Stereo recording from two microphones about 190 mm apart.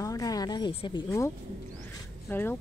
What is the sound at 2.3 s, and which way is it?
Speech, 10° left (ahead or behind).